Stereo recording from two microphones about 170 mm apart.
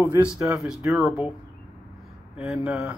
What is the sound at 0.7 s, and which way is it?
Speech, centre (ahead or behind).